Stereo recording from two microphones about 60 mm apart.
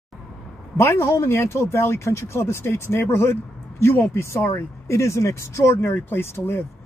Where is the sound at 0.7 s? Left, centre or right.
Left.